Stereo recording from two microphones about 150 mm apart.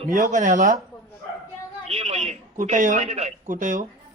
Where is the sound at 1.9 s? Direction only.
40° right (ahead or behind); by 3.8 s 60° right (ahead or behind).